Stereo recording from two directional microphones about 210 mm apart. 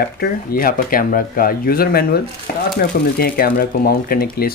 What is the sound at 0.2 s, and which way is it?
Speech, 45° left (ahead or behind).